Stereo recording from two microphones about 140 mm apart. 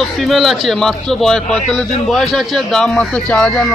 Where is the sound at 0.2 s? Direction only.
Centre (ahead or behind).